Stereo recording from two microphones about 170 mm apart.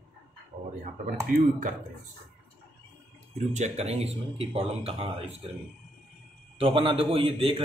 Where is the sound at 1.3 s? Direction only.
50° right (ahead or behind).